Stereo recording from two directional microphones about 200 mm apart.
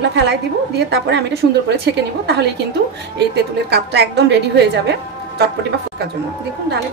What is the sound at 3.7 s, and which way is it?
A woman's voice, 55° right (ahead or behind).